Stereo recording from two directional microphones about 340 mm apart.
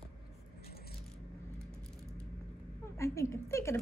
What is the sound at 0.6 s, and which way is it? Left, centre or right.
Vehicle, left.